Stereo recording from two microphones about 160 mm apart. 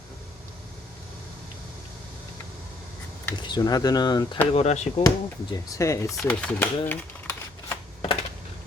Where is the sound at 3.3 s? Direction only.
30° left (ahead or behind).